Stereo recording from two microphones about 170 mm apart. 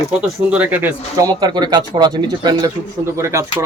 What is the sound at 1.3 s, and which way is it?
A man's voice, 25° right (ahead or behind).